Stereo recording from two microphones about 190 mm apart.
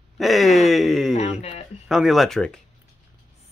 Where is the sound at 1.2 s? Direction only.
35° left (ahead or behind).